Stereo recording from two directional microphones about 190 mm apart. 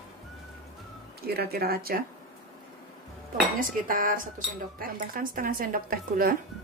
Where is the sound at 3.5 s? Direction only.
45° right (ahead or behind).